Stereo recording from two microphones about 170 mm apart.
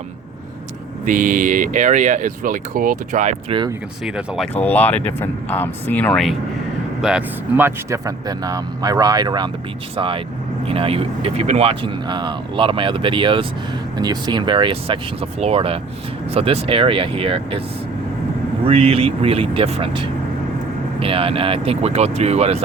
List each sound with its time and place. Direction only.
1.0 s speech: 50° right (ahead or behind)
4.0 s speech: 5° right (ahead or behind)
4.6 s speech: 10° left (ahead or behind)
7.0 s speech: 5° right (ahead or behind); by 17.6 s 30° right (ahead or behind)
18.6 s speech: 35° right (ahead or behind)